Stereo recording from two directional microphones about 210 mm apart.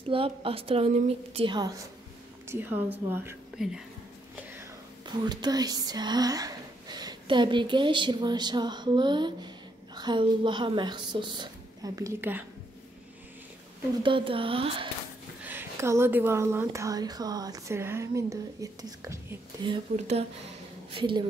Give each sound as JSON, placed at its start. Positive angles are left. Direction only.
{"t": 0.1, "sound": "a woman's voice", "side_deg": -25}
{"t": 4.6, "sound": "a sound", "side_deg": -20}
{"t": 9.9, "sound": "a woman's voice", "side_deg": -20}
{"t": 14.0, "sound": "a woman's voice", "side_deg": -25}
{"t": 15.4, "sound": "a woman's voice", "side_deg": -10}